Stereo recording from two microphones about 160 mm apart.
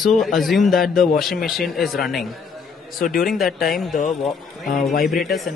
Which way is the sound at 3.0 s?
60° left (ahead or behind).